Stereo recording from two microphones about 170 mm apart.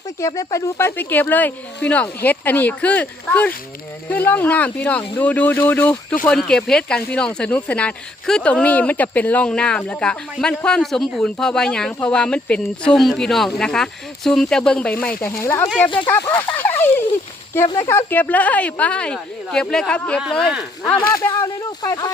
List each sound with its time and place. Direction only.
0.2 s speech: 20° left (ahead or behind)
15.6 s speech: centre (ahead or behind)
16.0 s speech: 15° left (ahead or behind)
16.6 s a sound: 10° left (ahead or behind)
17.7 s speech: 20° left (ahead or behind); by 20.7 s centre (ahead or behind)
21.8 s speech: 20° left (ahead or behind)